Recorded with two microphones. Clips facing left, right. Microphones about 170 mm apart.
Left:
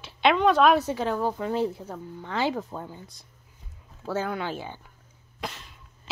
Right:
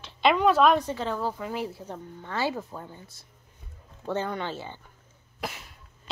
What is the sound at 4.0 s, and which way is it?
Speech, 5° left (ahead or behind).